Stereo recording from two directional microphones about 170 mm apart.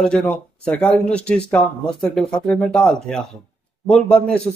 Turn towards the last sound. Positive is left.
turn(degrees=5)  # may be behind; listen again after turning